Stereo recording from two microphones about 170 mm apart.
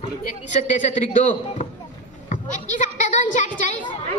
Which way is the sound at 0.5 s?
45° left (ahead or behind).